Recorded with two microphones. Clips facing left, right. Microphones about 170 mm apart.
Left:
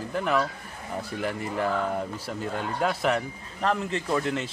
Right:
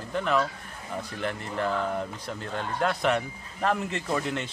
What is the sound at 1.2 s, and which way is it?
Speech, 5° left (ahead or behind).